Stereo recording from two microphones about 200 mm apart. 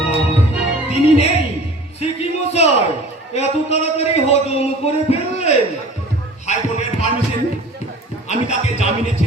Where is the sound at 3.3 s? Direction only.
30° left (ahead or behind).